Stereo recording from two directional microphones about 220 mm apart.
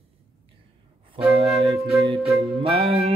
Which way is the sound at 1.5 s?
Centre (ahead or behind).